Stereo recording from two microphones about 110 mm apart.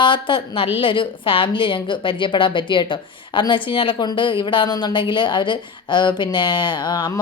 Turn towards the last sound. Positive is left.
turn(degrees=45)  # may be behind; listen again after turning